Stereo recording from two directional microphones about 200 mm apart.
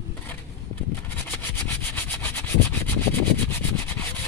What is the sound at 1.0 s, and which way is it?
Rub, 10° left (ahead or behind).